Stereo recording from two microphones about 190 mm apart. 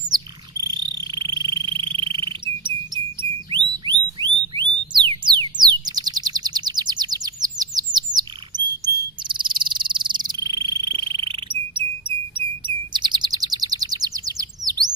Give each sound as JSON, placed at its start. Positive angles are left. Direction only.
{"t": 0.7, "sound": "frog", "side_deg": -20}
{"t": 11.0, "sound": "bird", "side_deg": -25}